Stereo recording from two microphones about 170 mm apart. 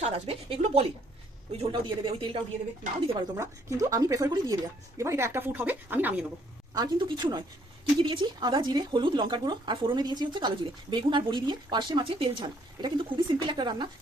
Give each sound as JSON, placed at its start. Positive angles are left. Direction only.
{"t": 0.0, "sound": "a woman's voice", "side_deg": -35}
{"t": 3.1, "sound": "speech", "side_deg": -20}
{"t": 6.7, "sound": "speech", "side_deg": -25}